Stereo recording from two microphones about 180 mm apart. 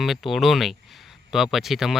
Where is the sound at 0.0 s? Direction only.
Centre (ahead or behind).